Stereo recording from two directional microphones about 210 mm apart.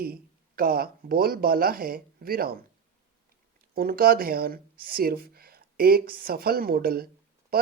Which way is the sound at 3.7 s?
45° right (ahead or behind).